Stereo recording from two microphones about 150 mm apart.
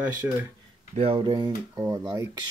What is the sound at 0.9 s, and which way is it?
Speech, 40° right (ahead or behind).